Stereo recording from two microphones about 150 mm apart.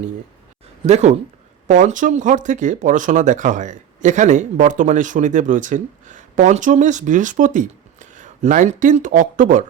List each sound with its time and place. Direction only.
0.9 s speech: 45° right (ahead or behind)
1.6 s speech: 60° right (ahead or behind)